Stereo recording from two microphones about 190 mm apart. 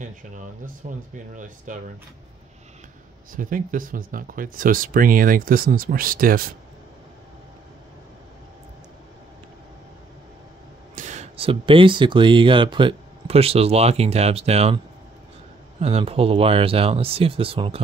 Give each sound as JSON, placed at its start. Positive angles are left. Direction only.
{"t": 0.0, "sound": "speech", "side_deg": -40}
{"t": 3.3, "sound": "speech", "side_deg": -45}
{"t": 11.0, "sound": "speech", "side_deg": -40}
{"t": 15.8, "sound": "speech", "side_deg": -30}